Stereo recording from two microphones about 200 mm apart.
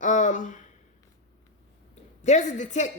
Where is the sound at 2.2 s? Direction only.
35° left (ahead or behind).